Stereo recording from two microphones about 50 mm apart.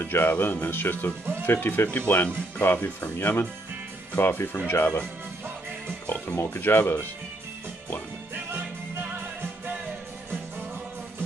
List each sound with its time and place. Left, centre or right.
0.0 s speech: left
6.0 s speech: left
6.3 s speech: left